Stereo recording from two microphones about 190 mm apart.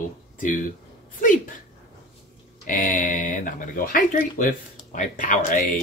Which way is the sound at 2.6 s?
45° left (ahead or behind).